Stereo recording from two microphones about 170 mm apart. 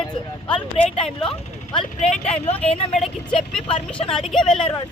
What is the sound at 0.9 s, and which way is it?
Speech, 30° left (ahead or behind).